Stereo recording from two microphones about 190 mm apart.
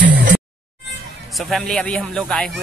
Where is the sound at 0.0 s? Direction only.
45° right (ahead or behind).